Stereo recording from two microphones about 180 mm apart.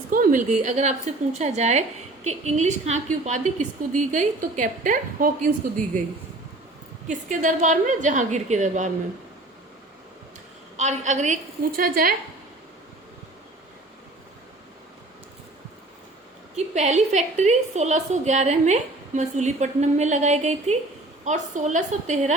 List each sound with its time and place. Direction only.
0.1 s a woman's voice: 50° right (ahead or behind)
7.1 s a woman's voice: 45° right (ahead or behind)
10.8 s a woman's voice: 40° right (ahead or behind)
11.8 s a woman's voice: 55° right (ahead or behind)
16.6 s a woman's voice: 40° right (ahead or behind)